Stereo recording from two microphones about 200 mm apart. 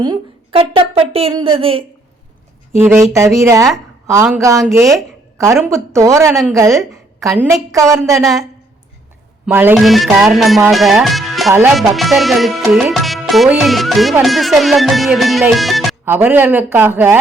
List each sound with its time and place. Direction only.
0.0 s a woman's voice: 25° right (ahead or behind)
2.7 s a man's voice: 10° right (ahead or behind)
8.2 s music: centre (ahead or behind)
9.5 s music: 10° right (ahead or behind)
16.0 s a man's voice: 10° right (ahead or behind)